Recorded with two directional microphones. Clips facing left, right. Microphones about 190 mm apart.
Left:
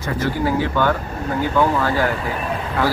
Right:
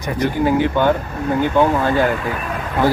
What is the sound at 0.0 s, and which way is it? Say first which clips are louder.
Speech: right 3 dB; 15° right (ahead or behind).